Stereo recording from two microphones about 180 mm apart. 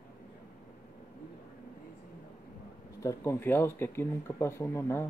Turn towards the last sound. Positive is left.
turn(degrees=15)  # may be behind; listen again after turning